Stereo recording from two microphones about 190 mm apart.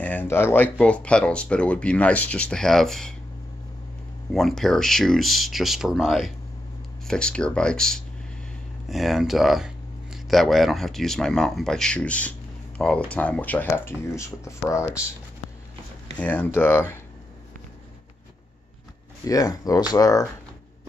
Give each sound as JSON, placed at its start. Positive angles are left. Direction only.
{"t": 0.0, "sound": "speech", "side_deg": 10}
{"t": 4.3, "sound": "speech", "side_deg": 0}
{"t": 16.2, "sound": "speech", "side_deg": 10}
{"t": 19.2, "sound": "speech", "side_deg": 20}